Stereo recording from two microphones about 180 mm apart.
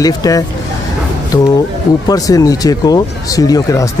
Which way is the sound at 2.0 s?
20° left (ahead or behind).